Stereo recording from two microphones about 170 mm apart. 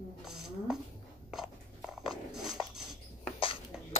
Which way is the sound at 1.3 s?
5° right (ahead or behind).